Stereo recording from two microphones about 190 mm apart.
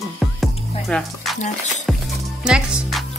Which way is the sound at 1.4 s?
40° left (ahead or behind).